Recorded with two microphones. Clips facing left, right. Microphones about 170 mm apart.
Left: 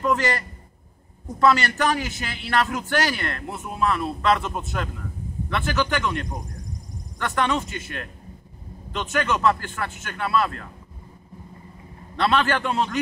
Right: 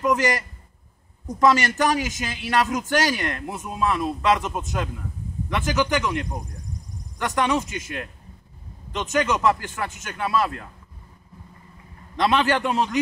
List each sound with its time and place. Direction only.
0.0 s a man's voice: 15° right (ahead or behind)
8.9 s a man's voice: 20° right (ahead or behind)
12.2 s a man's voice: 15° right (ahead or behind)